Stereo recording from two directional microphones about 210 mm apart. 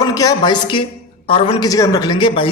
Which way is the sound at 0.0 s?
15° left (ahead or behind).